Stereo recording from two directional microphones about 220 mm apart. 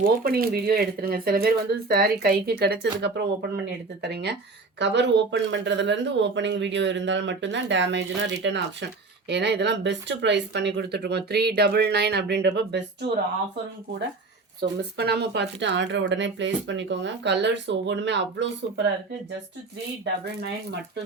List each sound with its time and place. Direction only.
0.0 s speech: 40° right (ahead or behind)
14.6 s speech: 50° right (ahead or behind)
20.4 s speech: 50° right (ahead or behind)